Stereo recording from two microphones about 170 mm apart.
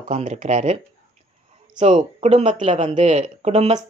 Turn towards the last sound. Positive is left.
turn(degrees=-40)  # may be behind; listen again after turning